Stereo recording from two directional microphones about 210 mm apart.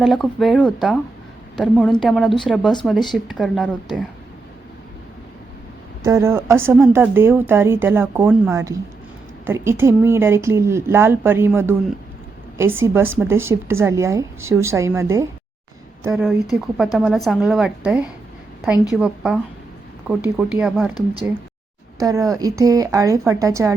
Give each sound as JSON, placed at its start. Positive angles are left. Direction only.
{"t": 0.0, "sound": "a woman's voice", "side_deg": 0}
{"t": 6.1, "sound": "a woman's voice", "side_deg": -15}
{"t": 16.6, "sound": "a woman's voice", "side_deg": 0}
{"t": 21.9, "sound": "a woman's voice", "side_deg": -15}